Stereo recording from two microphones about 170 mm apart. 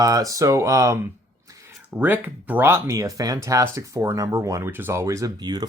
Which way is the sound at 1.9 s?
10° right (ahead or behind).